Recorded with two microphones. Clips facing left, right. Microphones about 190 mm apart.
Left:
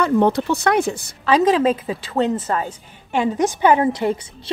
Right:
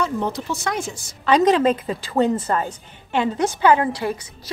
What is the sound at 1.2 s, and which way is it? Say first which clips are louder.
Speech: even; 5° left (ahead or behind).